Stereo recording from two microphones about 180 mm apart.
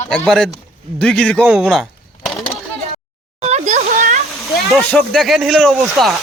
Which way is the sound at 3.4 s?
40° right (ahead or behind).